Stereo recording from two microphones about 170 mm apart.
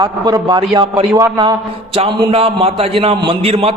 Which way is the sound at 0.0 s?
25° right (ahead or behind).